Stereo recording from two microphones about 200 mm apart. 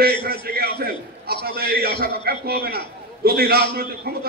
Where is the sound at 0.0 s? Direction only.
50° right (ahead or behind).